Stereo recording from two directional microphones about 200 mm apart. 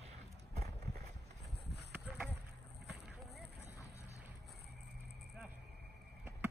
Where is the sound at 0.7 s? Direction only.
50° right (ahead or behind).